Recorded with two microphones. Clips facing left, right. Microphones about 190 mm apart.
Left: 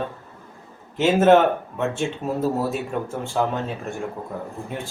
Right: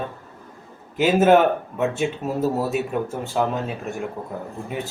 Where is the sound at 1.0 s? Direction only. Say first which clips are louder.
Even; 5° right (ahead or behind).